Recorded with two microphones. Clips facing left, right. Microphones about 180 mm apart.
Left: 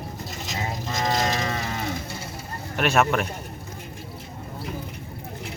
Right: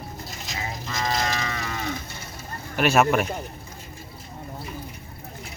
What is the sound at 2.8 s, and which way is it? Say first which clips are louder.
Speech: right 2 dB; 5° right (ahead or behind).